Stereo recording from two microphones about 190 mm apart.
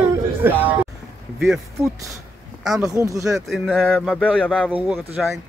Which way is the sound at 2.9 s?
15° right (ahead or behind).